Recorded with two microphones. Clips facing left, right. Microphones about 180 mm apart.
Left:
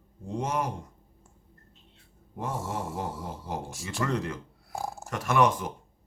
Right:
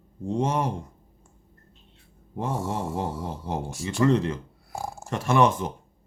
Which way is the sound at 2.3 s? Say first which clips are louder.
Right 4 dB; 30° right (ahead or behind).